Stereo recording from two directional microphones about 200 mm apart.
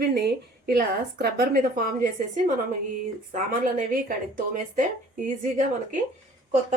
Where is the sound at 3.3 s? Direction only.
40° right (ahead or behind).